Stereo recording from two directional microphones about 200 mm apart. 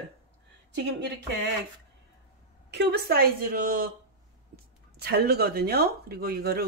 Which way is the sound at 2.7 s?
55° right (ahead or behind).